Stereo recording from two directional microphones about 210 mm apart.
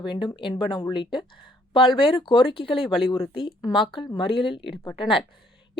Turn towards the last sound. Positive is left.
turn(degrees=25)  # may be behind; listen again after turning